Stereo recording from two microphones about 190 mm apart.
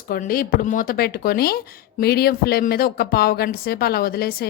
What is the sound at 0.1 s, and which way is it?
Speech, 50° left (ahead or behind).